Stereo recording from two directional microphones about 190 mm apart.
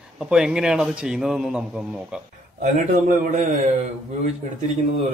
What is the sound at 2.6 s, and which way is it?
Speech, 40° right (ahead or behind).